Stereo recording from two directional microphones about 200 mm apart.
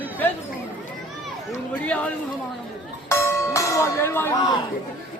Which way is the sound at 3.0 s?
15° left (ahead or behind).